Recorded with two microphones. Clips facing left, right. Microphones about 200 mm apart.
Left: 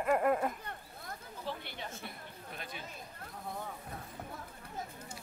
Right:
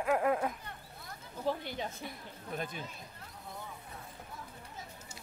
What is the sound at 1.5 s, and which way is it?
Speech, 45° right (ahead or behind).